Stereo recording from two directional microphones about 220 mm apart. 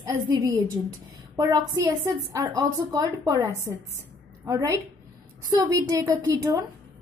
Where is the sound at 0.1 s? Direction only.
15° right (ahead or behind).